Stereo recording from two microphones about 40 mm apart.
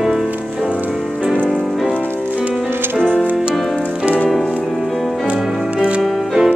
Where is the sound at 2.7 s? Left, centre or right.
Right.